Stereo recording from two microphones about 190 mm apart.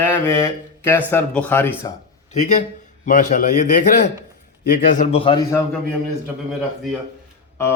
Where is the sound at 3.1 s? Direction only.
40° left (ahead or behind).